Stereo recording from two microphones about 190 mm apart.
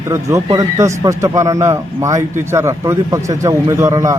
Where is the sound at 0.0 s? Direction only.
15° right (ahead or behind).